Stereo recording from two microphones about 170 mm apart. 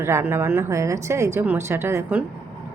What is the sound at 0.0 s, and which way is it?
A woman's voice, 15° right (ahead or behind).